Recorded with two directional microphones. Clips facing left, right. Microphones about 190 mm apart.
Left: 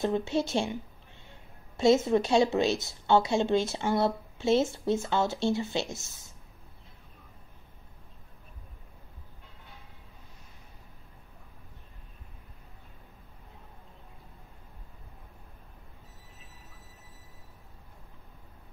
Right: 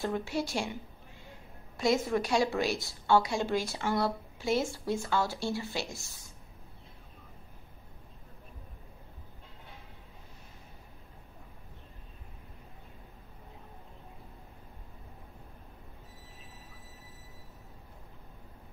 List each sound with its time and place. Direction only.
0.0 s a woman's voice: 20° left (ahead or behind)
1.8 s a woman's voice: 25° left (ahead or behind)